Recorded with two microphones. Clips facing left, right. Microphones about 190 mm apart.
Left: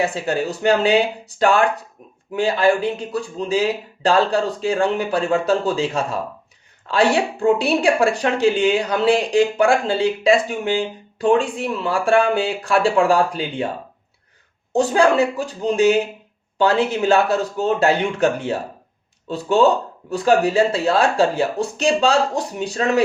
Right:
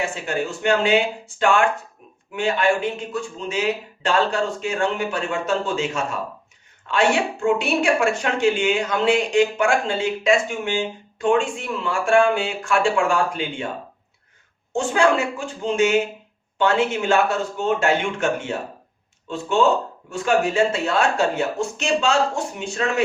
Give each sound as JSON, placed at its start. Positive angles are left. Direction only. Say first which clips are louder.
{"t": 0.0, "sound": "speech", "louder": "left 4 dB", "side_deg": 35}
{"t": 14.7, "sound": "speech", "louder": "left 3 dB", "side_deg": 35}